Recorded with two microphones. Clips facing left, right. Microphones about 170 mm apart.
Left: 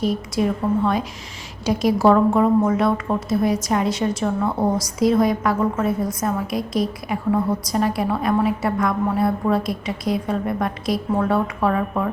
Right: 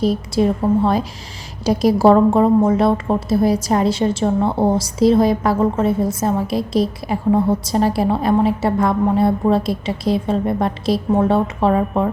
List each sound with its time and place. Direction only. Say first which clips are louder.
0.0 s a woman's voice: right 4 dB; 30° right (ahead or behind)